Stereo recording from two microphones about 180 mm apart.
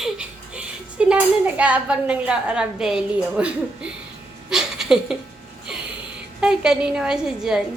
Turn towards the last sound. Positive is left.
turn(degrees=-5)  # may be behind; listen again after turning